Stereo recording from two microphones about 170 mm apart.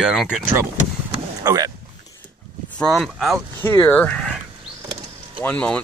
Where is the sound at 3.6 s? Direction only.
15° left (ahead or behind).